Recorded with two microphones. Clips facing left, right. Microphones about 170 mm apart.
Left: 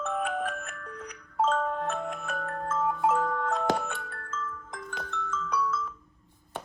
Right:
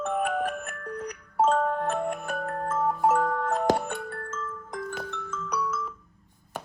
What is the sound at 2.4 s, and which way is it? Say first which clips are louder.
Music: right 2 dB; 35° right (ahead or behind).